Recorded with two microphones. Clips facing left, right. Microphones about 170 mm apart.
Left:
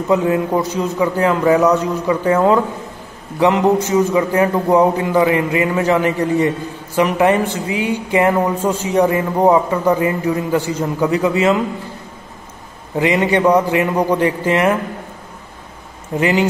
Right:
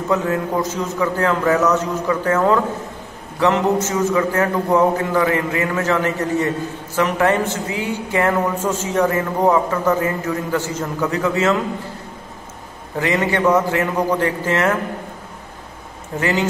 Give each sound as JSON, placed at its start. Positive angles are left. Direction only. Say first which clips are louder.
{"t": 0.1, "sound": "a woman's voice", "louder": "left 4 dB", "side_deg": 15}
{"t": 12.9, "sound": "a woman's voice", "louder": "left 4 dB", "side_deg": 15}
{"t": 16.2, "sound": "a woman's voice", "louder": "left 4 dB", "side_deg": 15}